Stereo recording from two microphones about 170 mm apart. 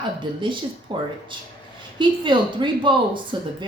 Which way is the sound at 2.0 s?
30° right (ahead or behind).